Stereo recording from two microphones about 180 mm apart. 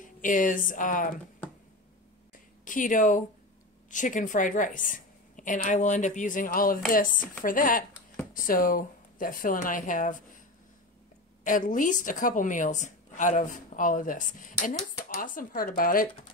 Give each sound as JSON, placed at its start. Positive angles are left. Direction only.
{"t": 0.0, "sound": "speech", "side_deg": 45}
{"t": 2.6, "sound": "a woman's voice", "side_deg": 45}
{"t": 11.4, "sound": "a woman's voice", "side_deg": 50}